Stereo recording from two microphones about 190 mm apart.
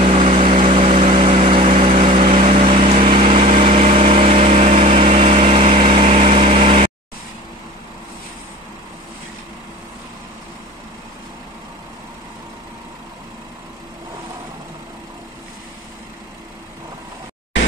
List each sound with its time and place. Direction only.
0.0 s vehicle: 30° right (ahead or behind)